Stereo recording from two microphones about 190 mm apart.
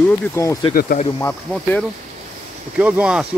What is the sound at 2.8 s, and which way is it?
Speech, 5° right (ahead or behind).